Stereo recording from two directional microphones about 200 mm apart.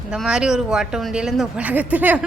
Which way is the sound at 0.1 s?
5° right (ahead or behind).